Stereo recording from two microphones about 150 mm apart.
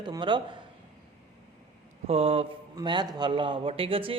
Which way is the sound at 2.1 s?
40° right (ahead or behind).